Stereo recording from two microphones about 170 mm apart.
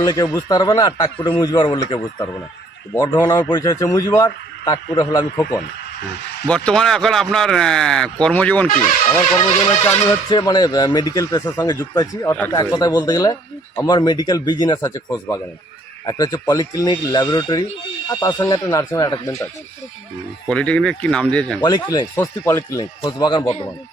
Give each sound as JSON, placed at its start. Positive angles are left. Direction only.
{"t": 0.0, "sound": "speech", "side_deg": 20}
{"t": 2.9, "sound": "speech", "side_deg": 20}
{"t": 6.5, "sound": "speech", "side_deg": 5}
{"t": 9.8, "sound": "speech", "side_deg": 20}
{"t": 20.5, "sound": "speech", "side_deg": 5}
{"t": 21.6, "sound": "speech", "side_deg": 25}